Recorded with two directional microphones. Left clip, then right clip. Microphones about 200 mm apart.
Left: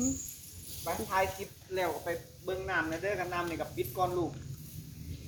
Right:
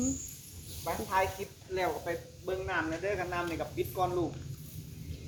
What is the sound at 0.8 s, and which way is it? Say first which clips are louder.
Speech: right 1 dB; 10° right (ahead or behind).